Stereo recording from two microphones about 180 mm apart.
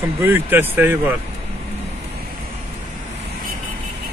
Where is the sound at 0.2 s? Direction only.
10° right (ahead or behind).